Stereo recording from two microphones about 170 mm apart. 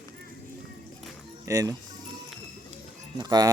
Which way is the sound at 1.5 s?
20° right (ahead or behind).